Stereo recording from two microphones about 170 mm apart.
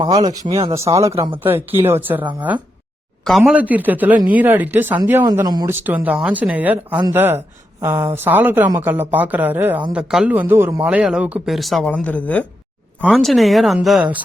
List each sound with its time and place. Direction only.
0.3 s speech: 30° right (ahead or behind)
0.7 s a woman's voice: 15° right (ahead or behind)
3.2 s a woman's voice: centre (ahead or behind)
5.2 s speech: 25° right (ahead or behind)
5.6 s a woman's voice: 10° right (ahead or behind)
10.8 s speech: 5° right (ahead or behind)